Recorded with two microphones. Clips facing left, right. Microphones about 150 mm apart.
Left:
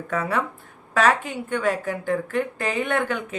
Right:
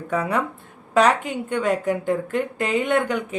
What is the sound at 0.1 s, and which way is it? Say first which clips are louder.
A woman's voice: right 2 dB; 15° right (ahead or behind).